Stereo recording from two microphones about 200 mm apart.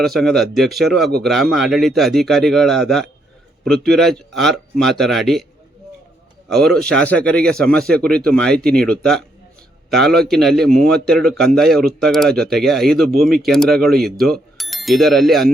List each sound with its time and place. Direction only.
0.0 s speech: centre (ahead or behind)
6.5 s speech: centre (ahead or behind)
10.9 s speech: 50° right (ahead or behind)
11.3 s speech: centre (ahead or behind)